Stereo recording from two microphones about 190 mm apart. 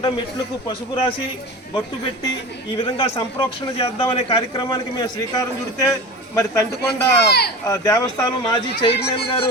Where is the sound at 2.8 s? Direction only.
30° left (ahead or behind).